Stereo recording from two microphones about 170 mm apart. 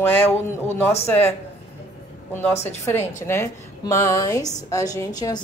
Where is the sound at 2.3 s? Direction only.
10° left (ahead or behind).